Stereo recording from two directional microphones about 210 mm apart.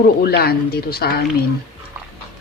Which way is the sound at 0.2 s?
50° left (ahead or behind).